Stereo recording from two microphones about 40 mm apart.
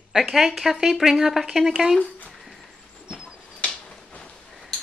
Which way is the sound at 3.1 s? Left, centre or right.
Right.